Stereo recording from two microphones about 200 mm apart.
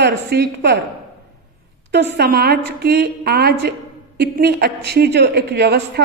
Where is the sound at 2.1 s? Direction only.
50° right (ahead or behind).